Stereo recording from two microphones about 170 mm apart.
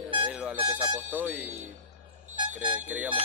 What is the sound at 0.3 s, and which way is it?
Music, 10° right (ahead or behind).